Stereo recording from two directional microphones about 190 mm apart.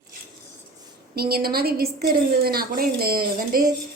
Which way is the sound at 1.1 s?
55° right (ahead or behind).